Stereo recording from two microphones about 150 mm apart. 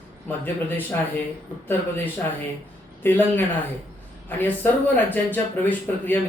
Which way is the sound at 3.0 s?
15° left (ahead or behind).